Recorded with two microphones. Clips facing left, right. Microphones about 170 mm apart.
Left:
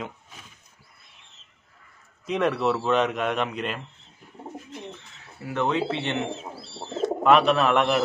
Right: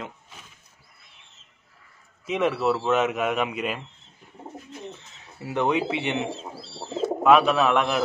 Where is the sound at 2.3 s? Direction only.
Centre (ahead or behind).